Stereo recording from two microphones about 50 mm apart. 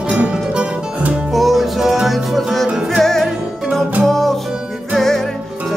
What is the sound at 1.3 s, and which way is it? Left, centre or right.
Music, centre.